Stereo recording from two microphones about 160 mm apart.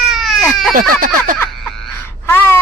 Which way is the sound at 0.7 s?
60° right (ahead or behind).